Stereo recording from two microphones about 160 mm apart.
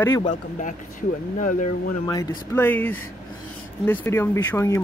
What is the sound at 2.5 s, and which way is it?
Speech, 10° left (ahead or behind).